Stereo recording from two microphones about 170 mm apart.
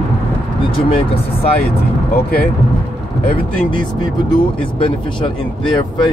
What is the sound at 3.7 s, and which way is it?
Speech, 30° left (ahead or behind).